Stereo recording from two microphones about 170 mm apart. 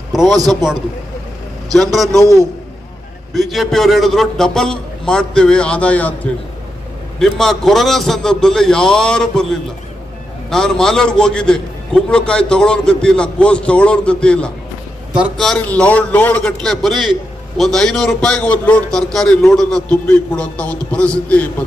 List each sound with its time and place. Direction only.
0.1 s a sound: centre (ahead or behind)
0.4 s a man's voice: 25° right (ahead or behind)
3.3 s a man's voice: centre (ahead or behind)
7.2 s a man's voice: centre (ahead or behind)